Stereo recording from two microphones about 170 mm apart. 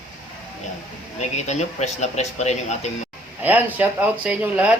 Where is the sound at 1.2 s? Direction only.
40° left (ahead or behind).